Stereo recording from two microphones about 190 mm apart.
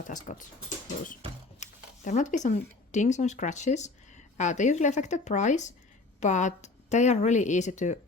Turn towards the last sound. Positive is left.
turn(degrees=40)  # may be behind; listen again after turning